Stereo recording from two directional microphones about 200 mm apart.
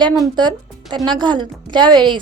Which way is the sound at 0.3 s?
20° right (ahead or behind).